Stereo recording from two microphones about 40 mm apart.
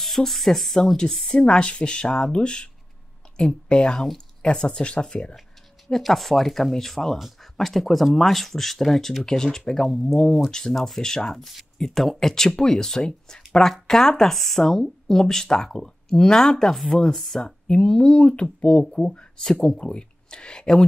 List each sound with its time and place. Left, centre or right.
0.0 s speech: centre
1.3 s speech: left
5.9 s speech: centre
7.2 s speech: centre
17.6 s speech: left